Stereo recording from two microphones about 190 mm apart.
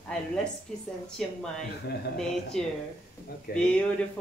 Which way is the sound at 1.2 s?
Centre (ahead or behind).